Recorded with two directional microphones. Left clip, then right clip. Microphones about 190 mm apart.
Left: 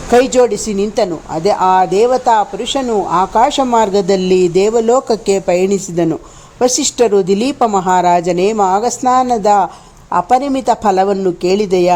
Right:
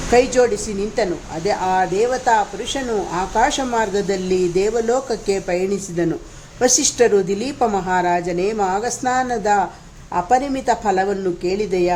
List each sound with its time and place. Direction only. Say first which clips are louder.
0.1 s speech: left 5 dB; 30° left (ahead or behind)